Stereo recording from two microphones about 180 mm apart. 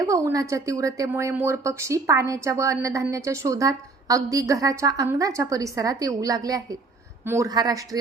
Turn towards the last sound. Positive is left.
turn(degrees=-20)  # may be behind; listen again after turning